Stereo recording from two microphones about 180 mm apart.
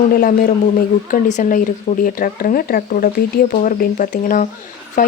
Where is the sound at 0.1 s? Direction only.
55° left (ahead or behind).